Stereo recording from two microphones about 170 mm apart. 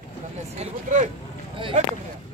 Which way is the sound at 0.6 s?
45° right (ahead or behind).